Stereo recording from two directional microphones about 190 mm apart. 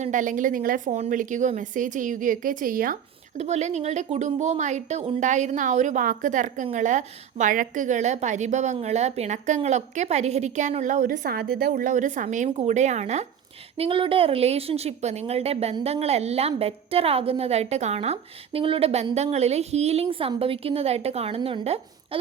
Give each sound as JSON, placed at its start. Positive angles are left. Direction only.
{"t": 0.0, "sound": "a woman's voice", "side_deg": -40}